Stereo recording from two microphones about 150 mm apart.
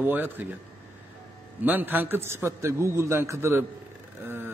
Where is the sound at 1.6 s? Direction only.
10° right (ahead or behind).